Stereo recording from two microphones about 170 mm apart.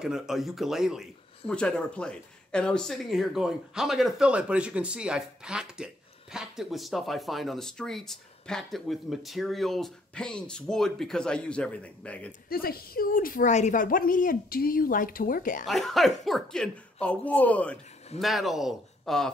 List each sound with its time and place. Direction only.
0.0 s speech: 5° right (ahead or behind)
12.3 s a woman's voice: 60° left (ahead or behind)
15.6 s a woman's voice: centre (ahead or behind)